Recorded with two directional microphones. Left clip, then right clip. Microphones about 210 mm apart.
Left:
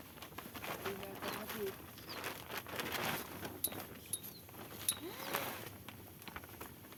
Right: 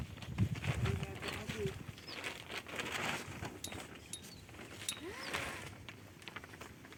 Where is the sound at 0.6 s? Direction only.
45° left (ahead or behind).